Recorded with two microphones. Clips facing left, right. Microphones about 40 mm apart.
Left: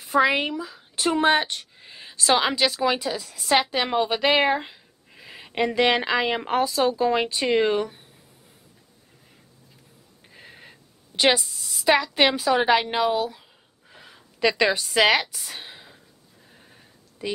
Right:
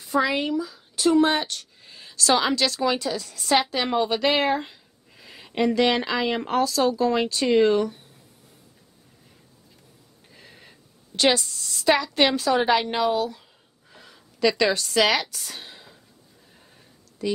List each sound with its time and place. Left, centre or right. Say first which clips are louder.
0.0 s speech: left 3 dB; left
10.3 s a woman's voice: left 3 dB; centre
13.8 s a sound: left 1 dB; centre
14.5 s speech: left 2 dB; centre
16.5 s sheep: left 2 dB; centre